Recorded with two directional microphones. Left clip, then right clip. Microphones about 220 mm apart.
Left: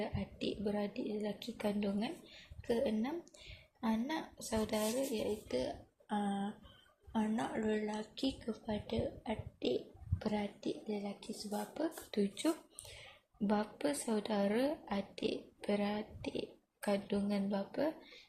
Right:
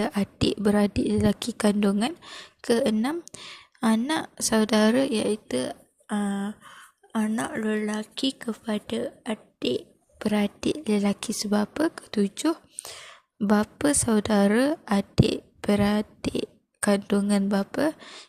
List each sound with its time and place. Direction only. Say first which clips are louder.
0.0 s a woman's voice: right 14 dB; 35° right (ahead or behind)